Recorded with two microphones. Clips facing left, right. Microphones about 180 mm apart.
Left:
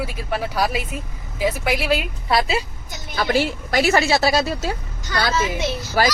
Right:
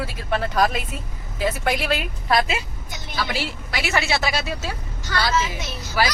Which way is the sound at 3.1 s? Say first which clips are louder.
Left 7 dB; 50° left (ahead or behind).